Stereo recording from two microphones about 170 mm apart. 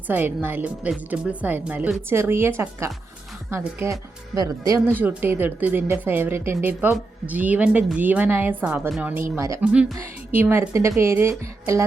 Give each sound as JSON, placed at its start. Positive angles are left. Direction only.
{"t": 0.1, "sound": "a woman's voice", "side_deg": -10}